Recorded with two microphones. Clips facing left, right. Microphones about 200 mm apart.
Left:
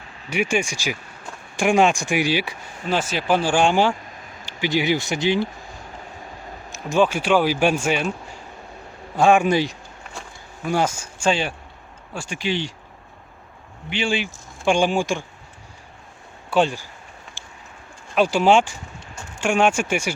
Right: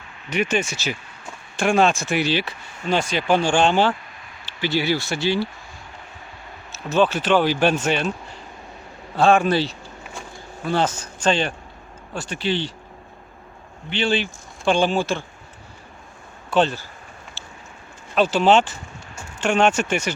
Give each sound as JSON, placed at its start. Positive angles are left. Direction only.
{"t": 0.3, "sound": "speech", "side_deg": 10}
{"t": 6.7, "sound": "speech", "side_deg": 15}
{"t": 9.1, "sound": "speech", "side_deg": 15}
{"t": 13.9, "sound": "speech", "side_deg": 10}
{"t": 16.5, "sound": "speech", "side_deg": 10}
{"t": 17.4, "sound": "bird", "side_deg": 15}
{"t": 18.1, "sound": "speech", "side_deg": 10}